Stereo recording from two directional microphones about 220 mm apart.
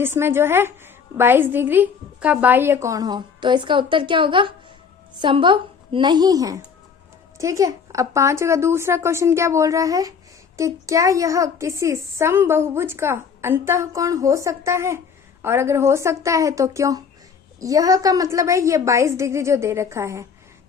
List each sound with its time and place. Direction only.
0.0 s a woman's voice: 10° right (ahead or behind)